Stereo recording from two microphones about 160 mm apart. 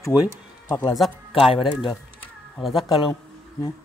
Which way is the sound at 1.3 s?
35° left (ahead or behind).